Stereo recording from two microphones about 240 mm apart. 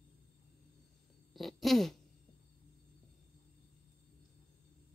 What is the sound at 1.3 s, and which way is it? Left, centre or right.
Fart, centre.